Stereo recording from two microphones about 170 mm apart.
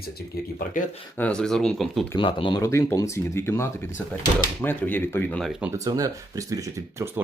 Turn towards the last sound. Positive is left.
turn(degrees=-15)  # may be behind; listen again after turning